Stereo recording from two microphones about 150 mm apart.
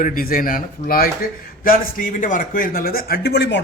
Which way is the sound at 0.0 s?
70° left (ahead or behind).